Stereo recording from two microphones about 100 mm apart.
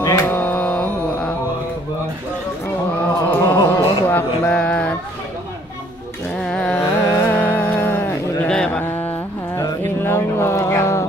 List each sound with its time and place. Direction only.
0.2 s music: 15° left (ahead or behind)
3.0 s a sound: 15° left (ahead or behind)
6.3 s music: 5° left (ahead or behind)
6.8 s music: 25° left (ahead or behind)
8.5 s mantra: 10° left (ahead or behind)
10.0 s a sound: 25° left (ahead or behind)